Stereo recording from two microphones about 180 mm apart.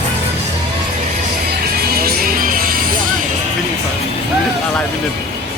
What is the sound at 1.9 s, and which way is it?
Music, 55° right (ahead or behind).